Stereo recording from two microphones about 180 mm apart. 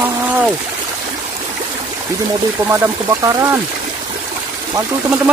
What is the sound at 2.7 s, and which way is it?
Speech, 15° right (ahead or behind).